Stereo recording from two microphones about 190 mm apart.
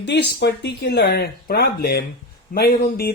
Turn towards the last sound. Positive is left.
turn(degrees=55)  # may be behind; listen again after turning